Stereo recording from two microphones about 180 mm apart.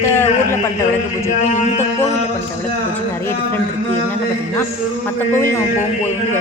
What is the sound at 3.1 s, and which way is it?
Speech, 15° left (ahead or behind).